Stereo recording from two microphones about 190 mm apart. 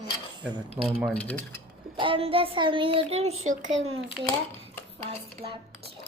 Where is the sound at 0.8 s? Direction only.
5° left (ahead or behind).